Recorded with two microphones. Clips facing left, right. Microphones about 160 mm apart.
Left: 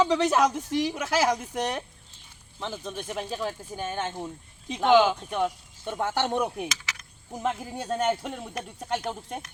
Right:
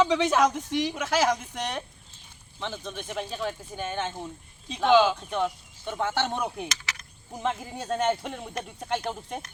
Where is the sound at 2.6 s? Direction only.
5° left (ahead or behind).